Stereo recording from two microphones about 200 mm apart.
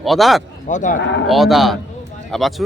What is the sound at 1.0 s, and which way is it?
Speech, 60° left (ahead or behind).